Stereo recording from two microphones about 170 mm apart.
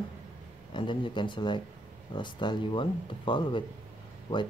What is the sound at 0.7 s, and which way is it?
Speech, 30° left (ahead or behind).